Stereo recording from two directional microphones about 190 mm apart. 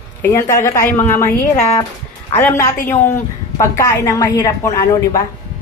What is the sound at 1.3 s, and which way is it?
Speech, 35° left (ahead or behind).